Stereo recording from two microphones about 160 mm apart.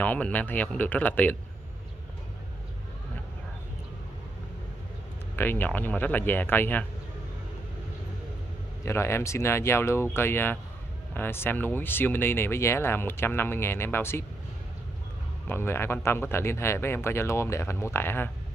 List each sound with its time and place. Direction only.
0.0 s speech: 10° left (ahead or behind)
5.3 s speech: 10° left (ahead or behind)
8.8 s speech: 15° left (ahead or behind)
15.4 s speech: 15° left (ahead or behind)